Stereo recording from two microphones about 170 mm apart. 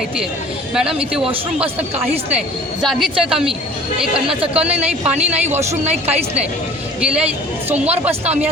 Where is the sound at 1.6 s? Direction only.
35° right (ahead or behind).